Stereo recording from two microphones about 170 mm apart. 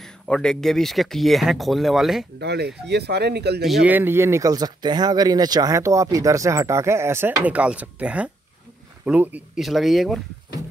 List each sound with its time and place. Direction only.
0.0 s speech: 5° left (ahead or behind)
2.3 s speech: 75° right (ahead or behind)
3.6 s speech: 5° right (ahead or behind)